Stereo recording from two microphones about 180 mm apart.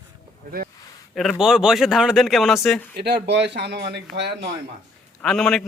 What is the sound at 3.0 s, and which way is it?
Speech, 65° right (ahead or behind).